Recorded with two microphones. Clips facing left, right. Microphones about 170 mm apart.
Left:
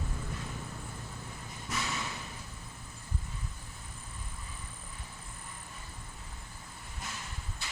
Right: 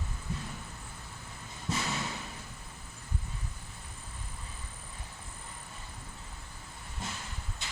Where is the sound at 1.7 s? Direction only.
25° right (ahead or behind).